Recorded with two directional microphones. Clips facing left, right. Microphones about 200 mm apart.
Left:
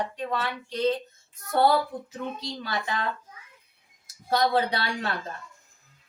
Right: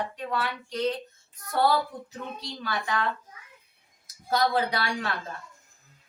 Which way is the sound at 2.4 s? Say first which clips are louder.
Left 1 dB; 25° left (ahead or behind).